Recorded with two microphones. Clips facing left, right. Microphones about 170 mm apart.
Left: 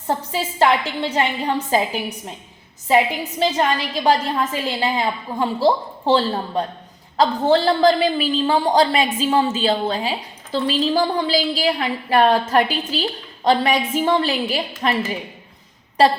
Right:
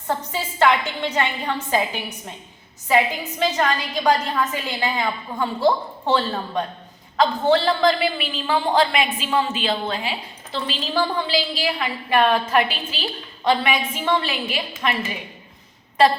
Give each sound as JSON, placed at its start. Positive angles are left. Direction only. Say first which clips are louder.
{"t": 0.3, "sound": "a woman's voice", "louder": "left 1 dB", "side_deg": 30}